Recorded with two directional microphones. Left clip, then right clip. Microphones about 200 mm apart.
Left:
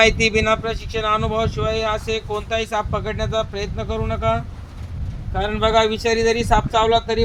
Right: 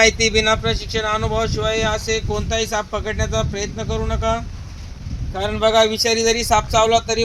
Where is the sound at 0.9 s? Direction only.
10° left (ahead or behind).